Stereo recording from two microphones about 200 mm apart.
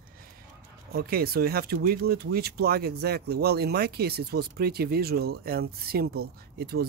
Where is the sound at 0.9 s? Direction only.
50° right (ahead or behind).